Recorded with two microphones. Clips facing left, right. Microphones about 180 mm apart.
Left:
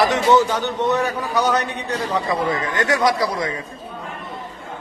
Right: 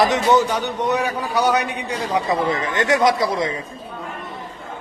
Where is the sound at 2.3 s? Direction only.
20° right (ahead or behind).